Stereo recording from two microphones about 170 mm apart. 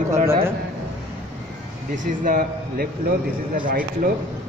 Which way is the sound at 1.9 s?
50° right (ahead or behind).